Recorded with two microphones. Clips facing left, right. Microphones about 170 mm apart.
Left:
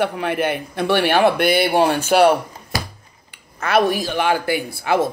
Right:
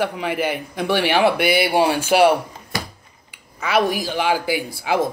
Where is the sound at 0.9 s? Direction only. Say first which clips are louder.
Left 2 dB; 50° left (ahead or behind).